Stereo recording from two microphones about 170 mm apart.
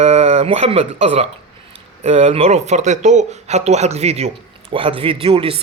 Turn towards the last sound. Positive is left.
turn(degrees=-35)  # may be behind; listen again after turning